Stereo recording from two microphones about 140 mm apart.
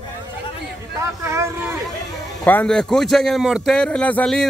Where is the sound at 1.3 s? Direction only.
20° right (ahead or behind).